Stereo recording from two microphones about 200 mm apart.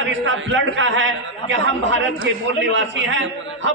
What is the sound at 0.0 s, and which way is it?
A man's voice, 65° right (ahead or behind).